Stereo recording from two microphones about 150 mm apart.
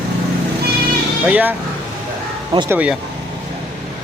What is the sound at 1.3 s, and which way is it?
Speech, 10° right (ahead or behind).